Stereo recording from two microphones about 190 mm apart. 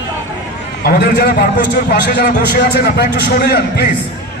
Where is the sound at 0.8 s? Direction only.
55° left (ahead or behind).